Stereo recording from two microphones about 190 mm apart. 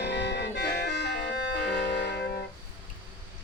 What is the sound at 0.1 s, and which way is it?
Music, 60° left (ahead or behind).